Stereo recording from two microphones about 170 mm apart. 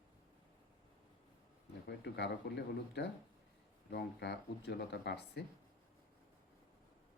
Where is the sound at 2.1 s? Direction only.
80° left.